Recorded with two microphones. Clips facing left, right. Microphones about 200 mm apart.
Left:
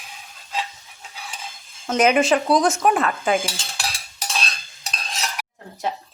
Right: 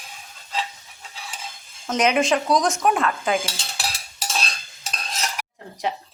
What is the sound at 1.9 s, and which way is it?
Cutlery, 5° left (ahead or behind).